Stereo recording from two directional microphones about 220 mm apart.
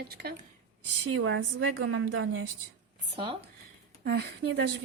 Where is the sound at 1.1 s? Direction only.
60° right (ahead or behind).